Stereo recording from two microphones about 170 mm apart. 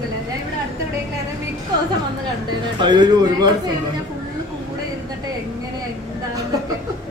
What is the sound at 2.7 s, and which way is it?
Speech, 25° right (ahead or behind).